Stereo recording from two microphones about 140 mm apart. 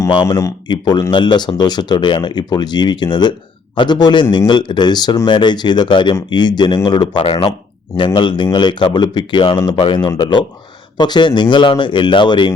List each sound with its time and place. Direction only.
0.3 s speech: 25° left (ahead or behind)